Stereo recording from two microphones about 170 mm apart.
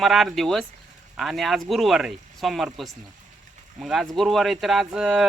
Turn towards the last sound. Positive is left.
turn(degrees=0)  # may be behind; listen again after turning